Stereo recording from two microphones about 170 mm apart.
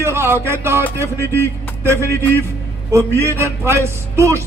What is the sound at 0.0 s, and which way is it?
A man's voice, 15° right (ahead or behind).